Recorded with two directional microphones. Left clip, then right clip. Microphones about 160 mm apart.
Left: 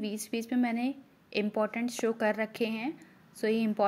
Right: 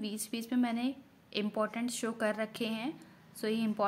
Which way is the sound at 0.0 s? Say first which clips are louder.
Left 4 dB; 20° left (ahead or behind).